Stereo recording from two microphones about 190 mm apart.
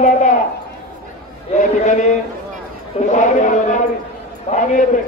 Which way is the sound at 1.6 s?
40° left (ahead or behind).